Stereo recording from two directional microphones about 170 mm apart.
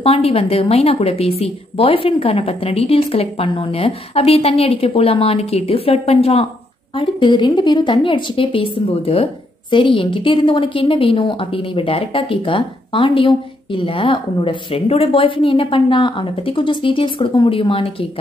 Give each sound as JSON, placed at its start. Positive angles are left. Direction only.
{"t": 0.0, "sound": "a woman's voice", "side_deg": 35}